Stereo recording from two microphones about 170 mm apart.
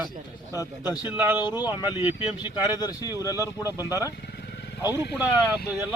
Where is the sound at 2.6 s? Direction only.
20° left (ahead or behind).